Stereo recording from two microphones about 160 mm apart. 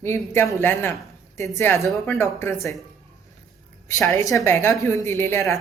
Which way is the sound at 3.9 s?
20° left (ahead or behind).